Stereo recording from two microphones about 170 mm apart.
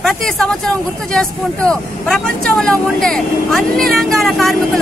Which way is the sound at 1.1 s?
5° left (ahead or behind).